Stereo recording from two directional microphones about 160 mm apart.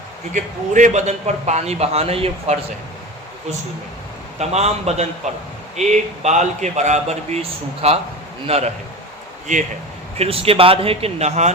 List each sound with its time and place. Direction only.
0.3 s a man's voice: 50° right (ahead or behind)
4.4 s a man's voice: 45° right (ahead or behind)
10.2 s speech: 35° right (ahead or behind)